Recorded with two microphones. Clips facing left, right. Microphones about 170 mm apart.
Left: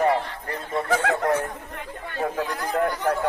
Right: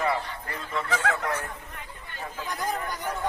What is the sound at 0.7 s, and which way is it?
Speech, 50° left (ahead or behind).